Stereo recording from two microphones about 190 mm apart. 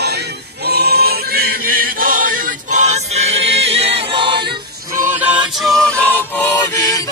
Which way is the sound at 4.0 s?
25° right (ahead or behind).